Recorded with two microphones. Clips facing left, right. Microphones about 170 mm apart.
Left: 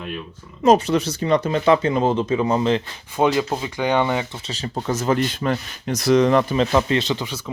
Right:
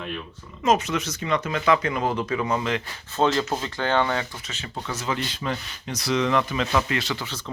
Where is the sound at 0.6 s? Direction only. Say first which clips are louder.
Left 6 dB; 35° left (ahead or behind).